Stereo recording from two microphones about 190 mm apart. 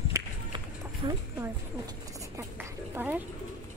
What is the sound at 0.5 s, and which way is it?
Run, 25° right (ahead or behind).